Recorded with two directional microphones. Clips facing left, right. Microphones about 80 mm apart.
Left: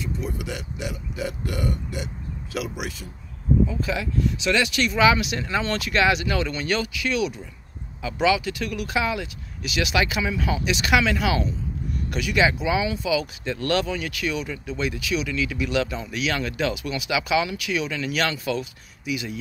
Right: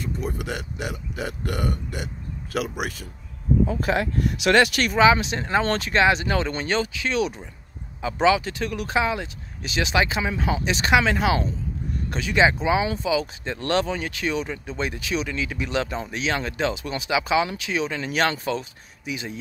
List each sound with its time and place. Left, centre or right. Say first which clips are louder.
0.0 s speech: right 1 dB; right
5.0 s speech: right 2 dB; right